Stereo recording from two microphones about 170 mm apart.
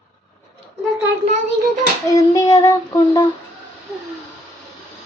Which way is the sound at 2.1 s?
20° left (ahead or behind).